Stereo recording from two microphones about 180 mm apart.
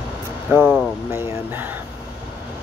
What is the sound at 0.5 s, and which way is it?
Speech, 10° right (ahead or behind).